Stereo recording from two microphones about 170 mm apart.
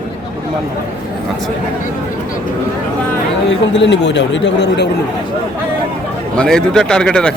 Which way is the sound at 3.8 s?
90° left.